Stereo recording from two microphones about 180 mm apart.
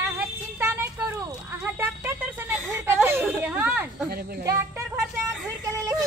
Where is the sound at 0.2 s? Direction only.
15° right (ahead or behind).